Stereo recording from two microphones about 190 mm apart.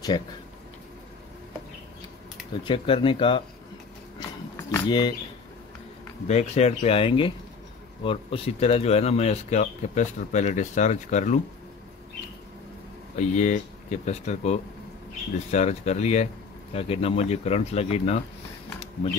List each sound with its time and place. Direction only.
2.6 s speech: 25° left (ahead or behind)
4.6 s a sound: 10° left (ahead or behind)
4.8 s speech: 25° left (ahead or behind)
6.2 s speech: 35° left (ahead or behind)
13.1 s speech: 40° left (ahead or behind)